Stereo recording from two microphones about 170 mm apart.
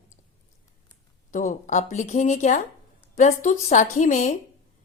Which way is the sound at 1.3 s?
45° left (ahead or behind).